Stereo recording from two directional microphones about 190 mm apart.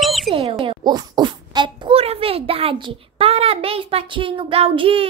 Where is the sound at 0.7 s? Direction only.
20° right (ahead or behind).